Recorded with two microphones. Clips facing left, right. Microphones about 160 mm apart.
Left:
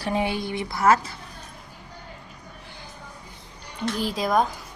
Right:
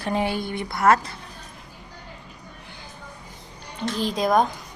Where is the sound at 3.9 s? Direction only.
5° left (ahead or behind).